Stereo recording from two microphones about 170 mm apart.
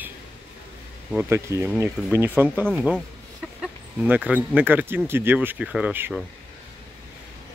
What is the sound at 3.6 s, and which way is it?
Chicken, 5° right (ahead or behind).